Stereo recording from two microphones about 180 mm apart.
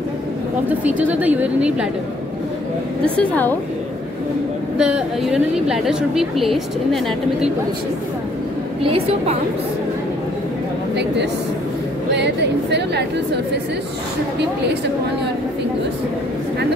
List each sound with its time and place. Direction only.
0.7 s a woman's voice: 10° right (ahead or behind)
3.2 s a woman's voice: 10° left (ahead or behind)
4.7 s a woman's voice: 5° right (ahead or behind)
8.8 s a woman's voice: 30° right (ahead or behind)
12.1 s speech: 70° right (ahead or behind)